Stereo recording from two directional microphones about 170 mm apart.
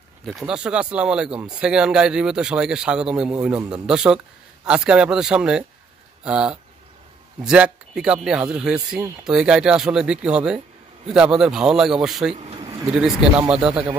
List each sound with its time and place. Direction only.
0.2 s speech: centre (ahead or behind)
12.4 s a sound: 35° right (ahead or behind)
12.8 s speech: 5° right (ahead or behind)